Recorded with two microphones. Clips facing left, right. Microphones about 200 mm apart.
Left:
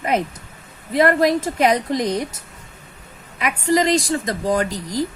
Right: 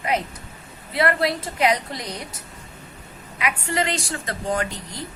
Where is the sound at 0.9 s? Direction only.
45° left (ahead or behind).